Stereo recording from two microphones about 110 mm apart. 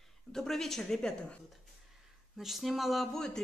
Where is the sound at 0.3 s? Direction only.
5° left (ahead or behind).